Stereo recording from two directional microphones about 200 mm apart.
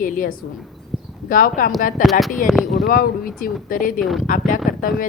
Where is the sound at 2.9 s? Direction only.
45° left (ahead or behind).